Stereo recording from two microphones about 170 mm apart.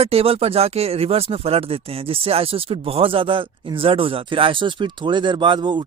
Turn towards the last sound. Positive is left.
turn(degrees=-30)  # may be behind; listen again after turning